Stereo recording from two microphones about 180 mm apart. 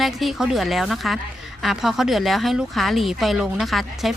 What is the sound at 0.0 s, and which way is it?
Speech, centre (ahead or behind).